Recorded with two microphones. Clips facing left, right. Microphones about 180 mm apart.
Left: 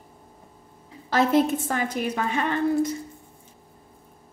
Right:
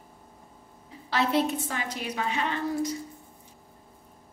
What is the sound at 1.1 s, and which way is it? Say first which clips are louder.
A woman's voice: left 5 dB; 45° left (ahead or behind).